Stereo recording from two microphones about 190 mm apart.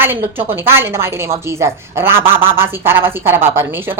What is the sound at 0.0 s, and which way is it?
Speech, 10° right (ahead or behind).